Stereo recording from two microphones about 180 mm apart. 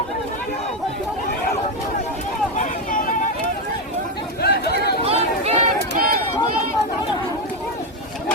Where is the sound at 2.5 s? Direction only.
50° left (ahead or behind).